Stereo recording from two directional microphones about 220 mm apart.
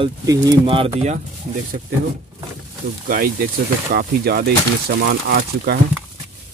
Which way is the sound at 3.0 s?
40° right (ahead or behind).